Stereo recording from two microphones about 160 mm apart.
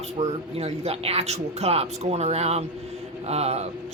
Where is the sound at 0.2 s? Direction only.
40° right (ahead or behind).